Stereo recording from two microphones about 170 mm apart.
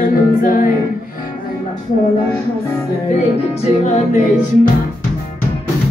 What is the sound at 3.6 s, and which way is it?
Music, 45° left (ahead or behind).